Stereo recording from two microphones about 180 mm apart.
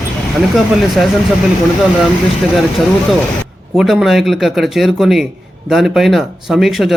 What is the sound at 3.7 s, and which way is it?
Speech, centre (ahead or behind).